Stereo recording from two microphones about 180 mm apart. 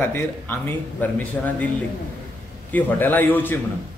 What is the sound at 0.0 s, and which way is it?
A man's voice, 10° left (ahead or behind).